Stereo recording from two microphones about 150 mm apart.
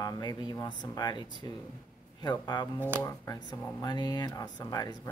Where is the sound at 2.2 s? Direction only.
30° left (ahead or behind).